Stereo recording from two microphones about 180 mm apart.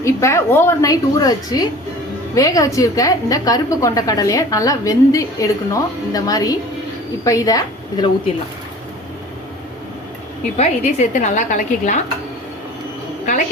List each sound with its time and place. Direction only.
0.0 s a woman's voice: 15° left (ahead or behind)
10.6 s a woman's voice: 40° left (ahead or behind)